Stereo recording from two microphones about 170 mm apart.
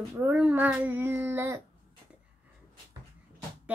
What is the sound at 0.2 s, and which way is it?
Child singing, 10° right (ahead or behind).